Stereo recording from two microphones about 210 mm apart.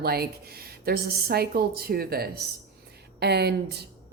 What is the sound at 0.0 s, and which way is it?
Speech, 50° right (ahead or behind).